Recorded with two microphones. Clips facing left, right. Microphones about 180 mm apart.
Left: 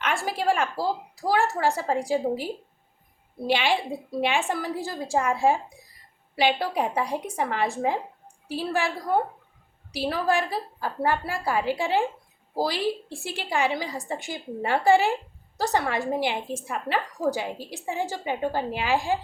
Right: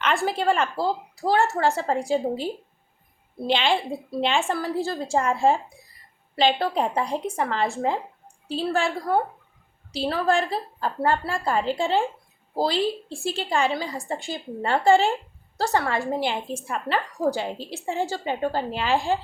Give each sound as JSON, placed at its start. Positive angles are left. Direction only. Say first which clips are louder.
{"t": 0.0, "sound": "a woman's voice", "louder": "right 3 dB", "side_deg": 10}
{"t": 3.4, "sound": "a woman's voice", "louder": "right 1 dB", "side_deg": 10}